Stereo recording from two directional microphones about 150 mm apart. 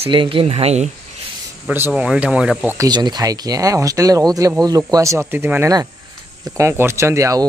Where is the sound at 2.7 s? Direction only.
25° right (ahead or behind).